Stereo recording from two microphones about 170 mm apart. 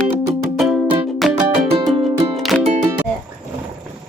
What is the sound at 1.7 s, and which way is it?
Music, 25° right (ahead or behind).